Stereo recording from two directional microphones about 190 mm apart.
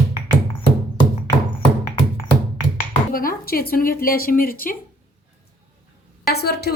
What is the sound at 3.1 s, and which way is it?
Speech, 50° left (ahead or behind).